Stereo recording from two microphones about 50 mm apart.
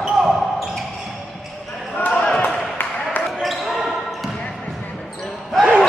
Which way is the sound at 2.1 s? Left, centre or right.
Centre.